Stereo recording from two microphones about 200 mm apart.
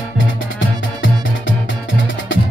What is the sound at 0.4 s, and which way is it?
Music, 70° left (ahead or behind).